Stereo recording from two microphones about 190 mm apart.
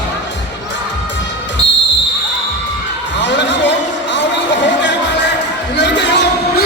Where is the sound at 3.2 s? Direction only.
70° left (ahead or behind).